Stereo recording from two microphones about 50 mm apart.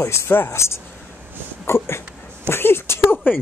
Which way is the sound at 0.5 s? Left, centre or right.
Left.